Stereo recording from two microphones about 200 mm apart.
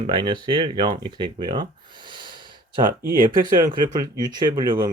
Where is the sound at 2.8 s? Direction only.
45° right (ahead or behind).